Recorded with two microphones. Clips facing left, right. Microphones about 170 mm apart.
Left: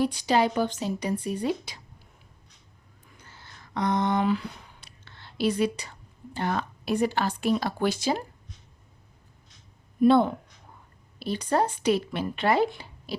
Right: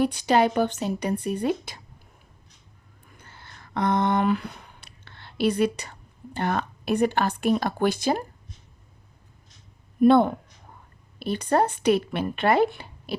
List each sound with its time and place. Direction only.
0.0 s speech: 60° right (ahead or behind)
3.2 s speech: 55° right (ahead or behind)
10.0 s speech: 55° right (ahead or behind)